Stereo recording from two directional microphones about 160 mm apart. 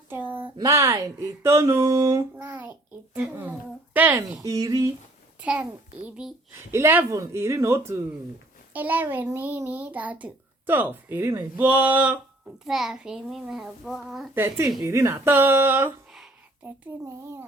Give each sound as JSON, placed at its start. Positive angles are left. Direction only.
{"t": 0.3, "sound": "a sound", "side_deg": -10}
{"t": 0.5, "sound": "a child's voice", "side_deg": -20}
{"t": 4.4, "sound": "speech", "side_deg": -20}
{"t": 5.4, "sound": "a child's voice", "side_deg": -10}
{"t": 14.3, "sound": "a child's voice", "side_deg": -15}